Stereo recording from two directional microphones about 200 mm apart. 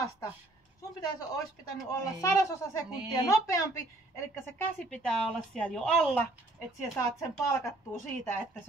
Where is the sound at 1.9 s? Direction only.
15° left (ahead or behind).